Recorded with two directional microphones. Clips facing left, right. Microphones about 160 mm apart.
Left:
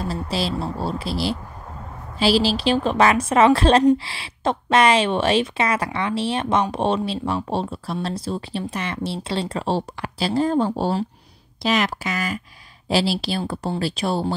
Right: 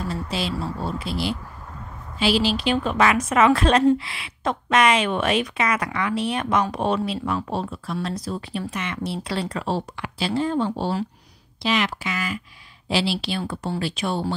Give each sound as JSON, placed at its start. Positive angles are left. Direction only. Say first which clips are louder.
{"t": 0.0, "sound": "a woman's voice", "louder": "left 2 dB", "side_deg": 35}